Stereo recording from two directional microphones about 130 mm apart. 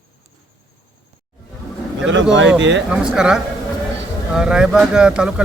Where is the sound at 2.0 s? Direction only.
10° right (ahead or behind).